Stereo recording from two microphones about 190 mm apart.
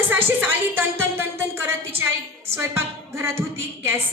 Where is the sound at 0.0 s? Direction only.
10° right (ahead or behind).